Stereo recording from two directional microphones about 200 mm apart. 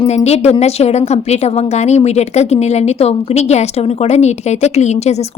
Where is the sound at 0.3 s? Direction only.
35° left (ahead or behind).